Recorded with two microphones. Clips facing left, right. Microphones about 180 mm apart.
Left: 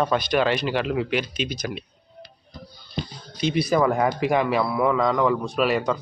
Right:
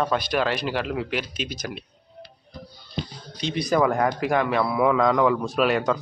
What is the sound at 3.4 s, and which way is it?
Speech, 5° left (ahead or behind).